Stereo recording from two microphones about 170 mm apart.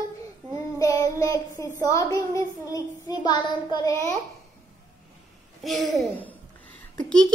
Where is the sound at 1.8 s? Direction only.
20° left (ahead or behind).